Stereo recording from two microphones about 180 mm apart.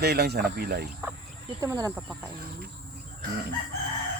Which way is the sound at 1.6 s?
15° right (ahead or behind).